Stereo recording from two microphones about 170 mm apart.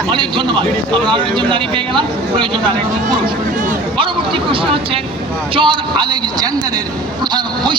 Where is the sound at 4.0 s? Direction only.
30° right (ahead or behind).